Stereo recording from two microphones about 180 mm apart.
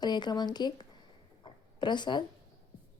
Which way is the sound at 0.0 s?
25° left (ahead or behind).